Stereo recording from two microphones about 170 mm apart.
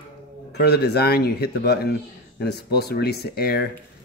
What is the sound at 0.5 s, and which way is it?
Speech, 75° left (ahead or behind).